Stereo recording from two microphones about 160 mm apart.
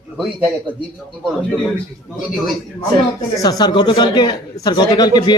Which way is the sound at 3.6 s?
30° left (ahead or behind).